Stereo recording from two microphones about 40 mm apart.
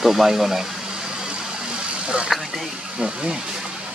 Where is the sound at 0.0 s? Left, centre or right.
Centre.